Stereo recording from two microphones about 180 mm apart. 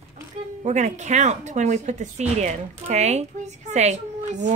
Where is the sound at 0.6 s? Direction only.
40° right (ahead or behind).